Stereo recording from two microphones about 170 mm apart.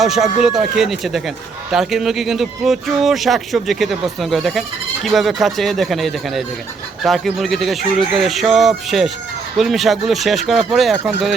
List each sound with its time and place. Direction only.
0.0 s speech: centre (ahead or behind)